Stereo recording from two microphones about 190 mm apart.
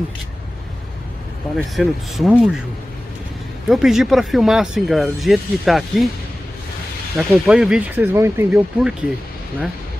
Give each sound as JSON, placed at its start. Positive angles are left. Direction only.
{"t": 1.8, "sound": "speech", "side_deg": 0}
{"t": 3.6, "sound": "speech", "side_deg": 0}
{"t": 7.2, "sound": "speech", "side_deg": -5}